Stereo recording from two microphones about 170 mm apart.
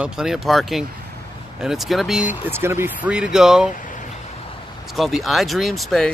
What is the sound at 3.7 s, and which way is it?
Vehicle, 50° left (ahead or behind).